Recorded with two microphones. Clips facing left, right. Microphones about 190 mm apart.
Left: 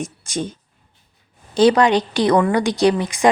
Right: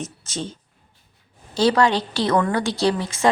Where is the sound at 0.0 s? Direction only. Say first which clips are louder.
Left 5 dB; 15° left (ahead or behind).